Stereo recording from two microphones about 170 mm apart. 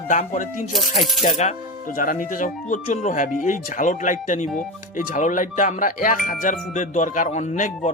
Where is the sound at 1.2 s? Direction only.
40° left (ahead or behind).